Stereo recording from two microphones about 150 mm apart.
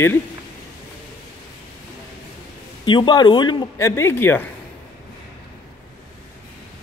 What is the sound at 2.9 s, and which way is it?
Speech, 30° left (ahead or behind).